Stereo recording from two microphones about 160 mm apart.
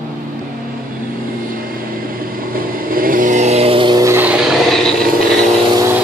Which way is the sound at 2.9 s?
60° right (ahead or behind).